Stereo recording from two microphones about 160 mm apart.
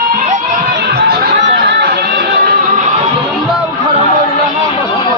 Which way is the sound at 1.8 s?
90° right.